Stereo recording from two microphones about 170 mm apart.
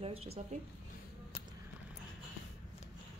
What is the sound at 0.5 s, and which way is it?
Speech, 40° right (ahead or behind).